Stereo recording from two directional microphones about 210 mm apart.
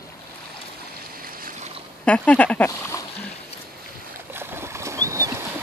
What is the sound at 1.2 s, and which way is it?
Boat, 45° right (ahead or behind).